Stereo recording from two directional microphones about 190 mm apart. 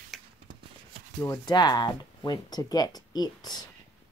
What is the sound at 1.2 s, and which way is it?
Speech, 20° left (ahead or behind).